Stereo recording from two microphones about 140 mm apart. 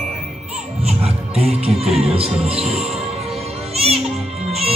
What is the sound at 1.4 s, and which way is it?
Music, 45° right (ahead or behind).